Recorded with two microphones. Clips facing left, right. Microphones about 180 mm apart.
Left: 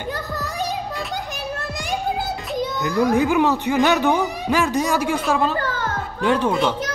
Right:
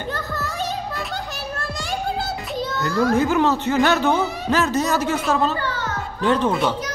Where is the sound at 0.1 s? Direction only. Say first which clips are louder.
Left 1 dB; 15° left (ahead or behind).